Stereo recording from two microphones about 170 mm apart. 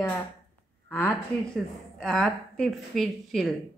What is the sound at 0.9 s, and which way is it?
A woman's voice, 10° left (ahead or behind).